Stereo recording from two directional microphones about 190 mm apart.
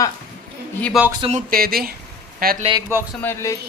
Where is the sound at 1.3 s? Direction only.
50° right (ahead or behind).